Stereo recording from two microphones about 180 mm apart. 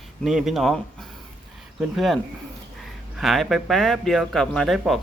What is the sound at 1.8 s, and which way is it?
A man's voice, centre (ahead or behind).